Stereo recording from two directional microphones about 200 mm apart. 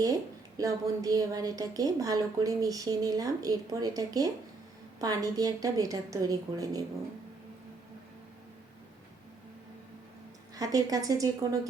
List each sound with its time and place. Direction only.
0.0 s a woman's voice: 15° right (ahead or behind)
10.5 s a woman's voice: 15° right (ahead or behind)